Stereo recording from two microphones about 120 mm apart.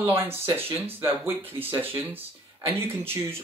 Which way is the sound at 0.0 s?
20° right (ahead or behind).